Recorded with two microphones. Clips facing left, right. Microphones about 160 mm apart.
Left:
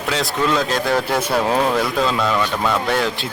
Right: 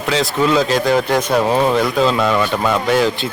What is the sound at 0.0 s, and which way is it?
A man's voice, centre (ahead or behind).